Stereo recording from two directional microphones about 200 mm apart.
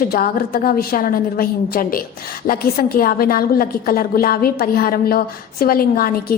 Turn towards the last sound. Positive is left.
turn(degrees=45)  # may be behind; listen again after turning